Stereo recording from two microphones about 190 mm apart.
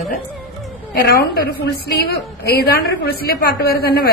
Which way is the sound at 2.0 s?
55° left (ahead or behind).